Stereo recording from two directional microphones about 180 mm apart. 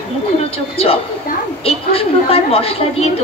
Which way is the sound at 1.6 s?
30° left (ahead or behind).